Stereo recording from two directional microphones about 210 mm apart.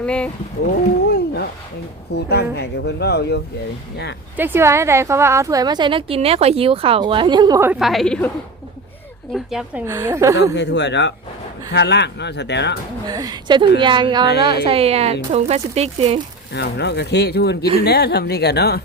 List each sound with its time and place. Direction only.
0.0 s speech: 5° left (ahead or behind)
1.1 s a sound: 50° left (ahead or behind)
2.1 s speech: 50° left (ahead or behind)
4.4 s a woman's voice: 10° right (ahead or behind)
7.8 s a woman's voice: centre (ahead or behind)
9.3 s a woman's voice: centre (ahead or behind)
9.8 s speech: 15° right (ahead or behind)
10.5 s speech: 55° left (ahead or behind)
13.1 s a woman's voice: 20° right (ahead or behind)
16.5 s speech: 55° left (ahead or behind)